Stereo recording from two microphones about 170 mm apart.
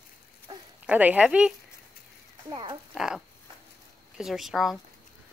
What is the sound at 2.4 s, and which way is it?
Speech, 25° right (ahead or behind).